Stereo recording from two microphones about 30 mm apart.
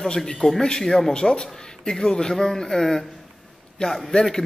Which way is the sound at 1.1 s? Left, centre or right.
Left.